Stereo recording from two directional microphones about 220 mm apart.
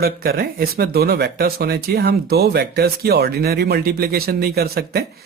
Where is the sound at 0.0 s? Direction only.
45° right (ahead or behind).